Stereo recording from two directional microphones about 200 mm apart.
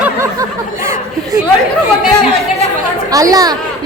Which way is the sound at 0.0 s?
15° right (ahead or behind).